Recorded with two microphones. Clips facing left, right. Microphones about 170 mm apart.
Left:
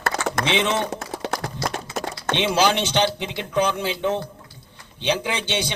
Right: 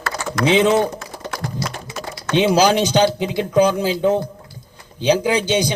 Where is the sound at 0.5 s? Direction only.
40° right (ahead or behind).